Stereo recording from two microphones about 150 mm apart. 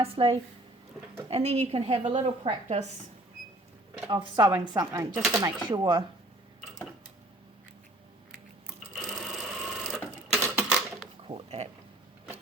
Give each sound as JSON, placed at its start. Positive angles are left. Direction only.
{"t": 0.0, "sound": "a woman's voice", "side_deg": -40}
{"t": 4.1, "sound": "speech", "side_deg": -30}
{"t": 5.6, "sound": "speech", "side_deg": -30}
{"t": 8.9, "sound": "sewing machine", "side_deg": 0}
{"t": 10.4, "sound": "typewriter", "side_deg": -5}
{"t": 11.3, "sound": "a woman's voice", "side_deg": -45}